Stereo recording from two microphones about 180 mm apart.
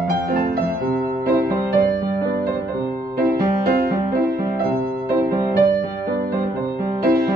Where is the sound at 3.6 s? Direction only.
55° right (ahead or behind).